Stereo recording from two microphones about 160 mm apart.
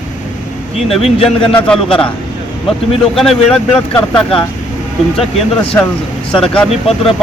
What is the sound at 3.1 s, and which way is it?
Speech, centre (ahead or behind).